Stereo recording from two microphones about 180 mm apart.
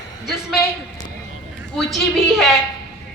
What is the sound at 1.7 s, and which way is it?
Speech, centre (ahead or behind).